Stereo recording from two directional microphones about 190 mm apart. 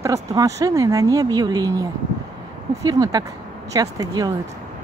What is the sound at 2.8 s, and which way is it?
Speech, 20° right (ahead or behind).